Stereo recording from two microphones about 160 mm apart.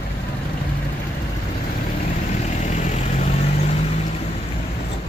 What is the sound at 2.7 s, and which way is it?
Vehicle, 45° left (ahead or behind).